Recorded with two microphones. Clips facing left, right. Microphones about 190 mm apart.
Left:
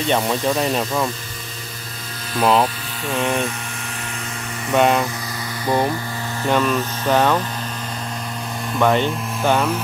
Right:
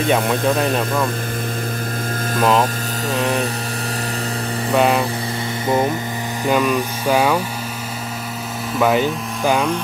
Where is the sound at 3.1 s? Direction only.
35° right (ahead or behind).